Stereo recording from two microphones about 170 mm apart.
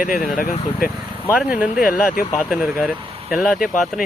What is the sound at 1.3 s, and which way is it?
Speech, 5° right (ahead or behind).